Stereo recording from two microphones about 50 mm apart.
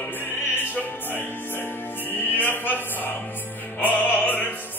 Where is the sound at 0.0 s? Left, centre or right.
Left.